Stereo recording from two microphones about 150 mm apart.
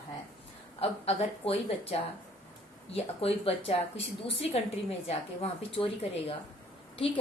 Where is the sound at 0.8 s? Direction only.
45° left (ahead or behind).